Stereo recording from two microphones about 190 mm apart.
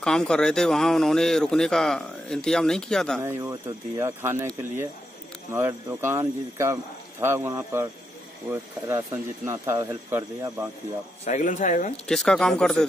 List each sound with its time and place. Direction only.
0.0 s speech: 5° left (ahead or behind)
3.2 s speech: 15° right (ahead or behind)
5.5 s speech: 15° right (ahead or behind)
11.2 s speech: 40° left (ahead or behind)
12.1 s speech: 5° left (ahead or behind)